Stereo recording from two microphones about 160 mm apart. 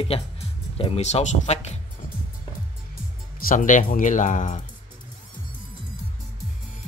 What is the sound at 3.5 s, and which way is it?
Speech, 55° left (ahead or behind).